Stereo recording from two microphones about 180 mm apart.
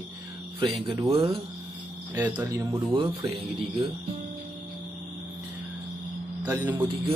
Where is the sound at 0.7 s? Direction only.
30° right (ahead or behind).